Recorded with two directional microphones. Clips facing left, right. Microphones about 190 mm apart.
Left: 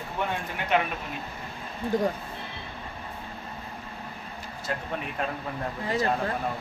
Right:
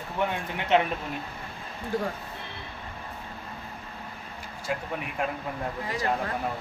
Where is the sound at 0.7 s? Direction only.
25° right (ahead or behind).